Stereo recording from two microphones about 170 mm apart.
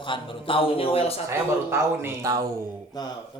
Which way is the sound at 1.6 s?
15° right (ahead or behind).